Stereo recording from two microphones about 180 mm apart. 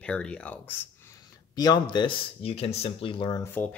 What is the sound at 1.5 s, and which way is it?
Speech, 20° left (ahead or behind).